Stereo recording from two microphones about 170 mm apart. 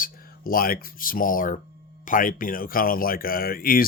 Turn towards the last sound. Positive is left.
turn(degrees=60)  # may be behind; listen again after turning